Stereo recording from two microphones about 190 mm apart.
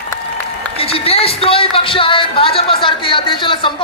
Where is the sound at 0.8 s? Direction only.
30° left (ahead or behind).